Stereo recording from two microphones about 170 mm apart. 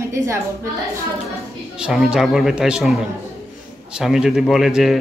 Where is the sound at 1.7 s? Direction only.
5° right (ahead or behind).